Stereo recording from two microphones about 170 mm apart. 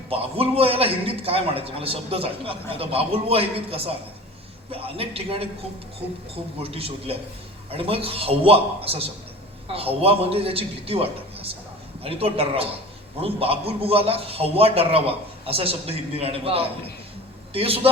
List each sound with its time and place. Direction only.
0.1 s a man's voice: 35° right (ahead or behind)
6.6 s a man's voice: 35° right (ahead or behind)